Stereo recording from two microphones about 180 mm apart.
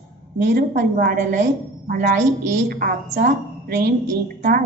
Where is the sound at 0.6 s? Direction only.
55° right (ahead or behind).